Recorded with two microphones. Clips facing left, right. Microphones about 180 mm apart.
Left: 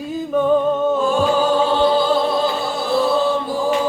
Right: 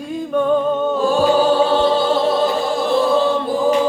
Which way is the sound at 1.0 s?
35° right (ahead or behind).